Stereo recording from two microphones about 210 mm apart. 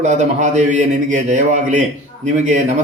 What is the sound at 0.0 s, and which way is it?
A man's voice, 35° right (ahead or behind).